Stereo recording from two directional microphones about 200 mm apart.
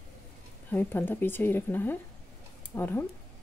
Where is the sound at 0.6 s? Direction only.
10° left (ahead or behind).